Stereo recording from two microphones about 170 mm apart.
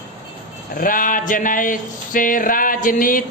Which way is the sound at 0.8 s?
55° left (ahead or behind).